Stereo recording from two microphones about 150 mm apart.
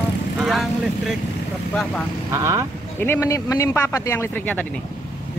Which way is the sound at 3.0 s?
15° left (ahead or behind).